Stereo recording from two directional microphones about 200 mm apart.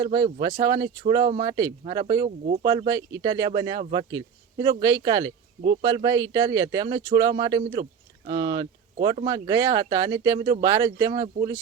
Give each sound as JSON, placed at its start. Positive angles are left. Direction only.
{"t": 0.0, "sound": "speech", "side_deg": -20}